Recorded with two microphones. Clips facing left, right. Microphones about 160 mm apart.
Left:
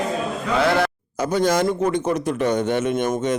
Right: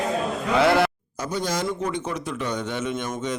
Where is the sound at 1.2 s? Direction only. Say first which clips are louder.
Left 7 dB; 90° left.